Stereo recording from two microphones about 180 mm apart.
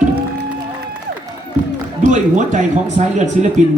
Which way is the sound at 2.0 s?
40° right (ahead or behind).